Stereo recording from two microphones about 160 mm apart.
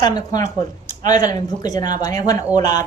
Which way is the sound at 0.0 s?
25° left (ahead or behind).